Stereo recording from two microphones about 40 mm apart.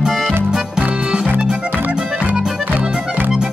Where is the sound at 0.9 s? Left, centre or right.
Centre.